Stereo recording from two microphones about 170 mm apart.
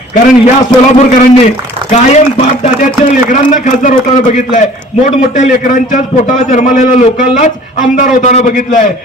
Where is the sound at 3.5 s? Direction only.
50° left (ahead or behind).